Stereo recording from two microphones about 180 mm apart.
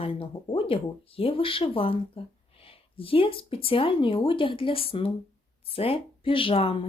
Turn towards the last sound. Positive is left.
turn(degrees=30)  # may be behind; listen again after turning